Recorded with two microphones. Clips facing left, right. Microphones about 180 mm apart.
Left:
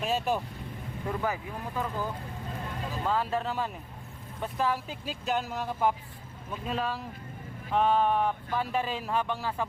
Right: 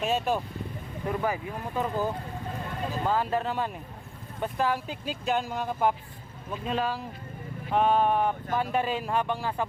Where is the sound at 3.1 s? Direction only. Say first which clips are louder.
Right 1 dB; 5° right (ahead or behind).